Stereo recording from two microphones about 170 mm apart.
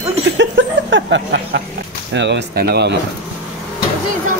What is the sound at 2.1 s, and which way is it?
Speech, 90° right.